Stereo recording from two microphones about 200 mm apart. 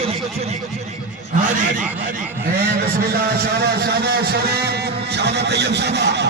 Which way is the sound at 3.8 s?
55° right (ahead or behind).